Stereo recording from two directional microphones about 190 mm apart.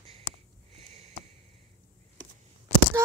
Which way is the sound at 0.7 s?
35° right (ahead or behind).